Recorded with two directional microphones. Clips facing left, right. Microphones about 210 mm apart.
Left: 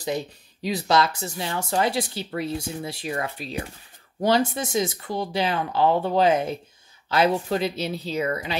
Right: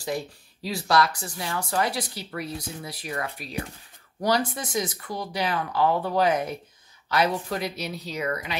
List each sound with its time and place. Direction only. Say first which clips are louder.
0.0 s speech: left 2 dB; 20° left (ahead or behind)